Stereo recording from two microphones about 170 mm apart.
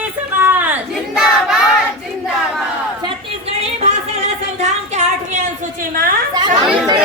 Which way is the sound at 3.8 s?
40° right (ahead or behind).